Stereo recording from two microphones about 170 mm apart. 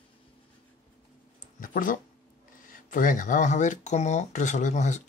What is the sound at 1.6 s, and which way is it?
Speech, 50° left (ahead or behind).